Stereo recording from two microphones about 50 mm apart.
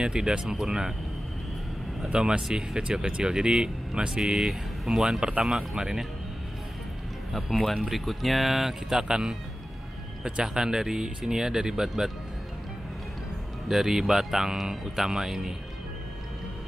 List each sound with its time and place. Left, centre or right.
0.0 s speech: centre
2.0 s speech: right
2.4 s speech: centre
4.2 s speech: centre
7.3 s speech: centre
13.7 s speech: centre